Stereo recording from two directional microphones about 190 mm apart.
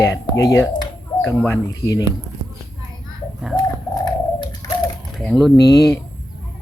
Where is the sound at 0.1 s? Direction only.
15° left (ahead or behind).